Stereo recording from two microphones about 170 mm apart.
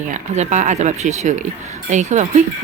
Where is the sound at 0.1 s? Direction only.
45° right (ahead or behind).